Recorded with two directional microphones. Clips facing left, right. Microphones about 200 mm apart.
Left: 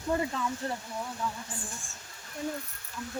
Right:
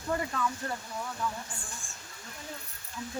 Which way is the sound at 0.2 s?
25° left (ahead or behind).